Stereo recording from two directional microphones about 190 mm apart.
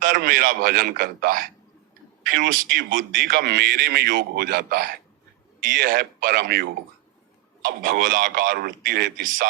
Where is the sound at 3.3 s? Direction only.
60° right (ahead or behind).